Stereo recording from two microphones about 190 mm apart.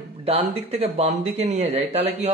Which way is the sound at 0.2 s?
30° right (ahead or behind).